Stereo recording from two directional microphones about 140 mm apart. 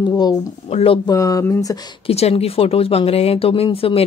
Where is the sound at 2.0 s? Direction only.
45° left (ahead or behind).